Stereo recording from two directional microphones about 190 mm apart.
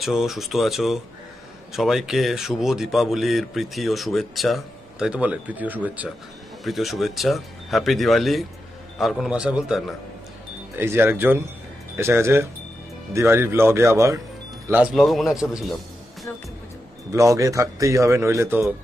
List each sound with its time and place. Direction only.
0.0 s a man's voice: centre (ahead or behind)
14.7 s a man's voice: 5° right (ahead or behind)
17.1 s speech: 15° right (ahead or behind)